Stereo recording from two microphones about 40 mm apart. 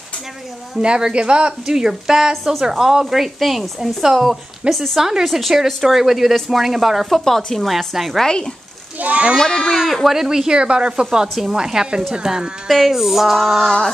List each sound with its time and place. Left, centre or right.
0.7 s speech: centre
1.8 s speech: centre
5.2 s a sound: centre
9.0 s speech: right
10.0 s speech: centre
12.6 s a sound: centre